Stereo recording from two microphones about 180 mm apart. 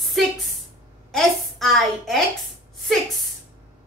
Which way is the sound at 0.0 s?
Centre (ahead or behind).